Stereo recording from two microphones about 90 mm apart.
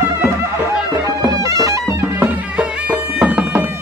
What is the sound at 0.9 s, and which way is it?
Music, 40° right (ahead or behind).